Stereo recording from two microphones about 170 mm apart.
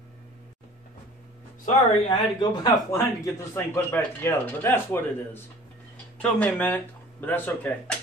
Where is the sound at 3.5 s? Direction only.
15° left (ahead or behind).